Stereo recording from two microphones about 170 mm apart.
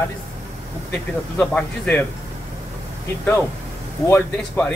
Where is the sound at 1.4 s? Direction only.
10° left (ahead or behind).